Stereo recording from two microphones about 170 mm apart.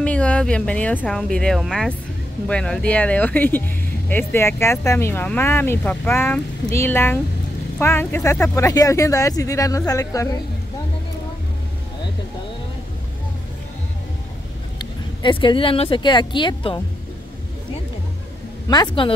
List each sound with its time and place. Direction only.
0.0 s a sound: 5° left (ahead or behind)
1.0 s speech: 5° left (ahead or behind)
14.8 s speech: 30° left (ahead or behind)
18.7 s speech: 25° left (ahead or behind)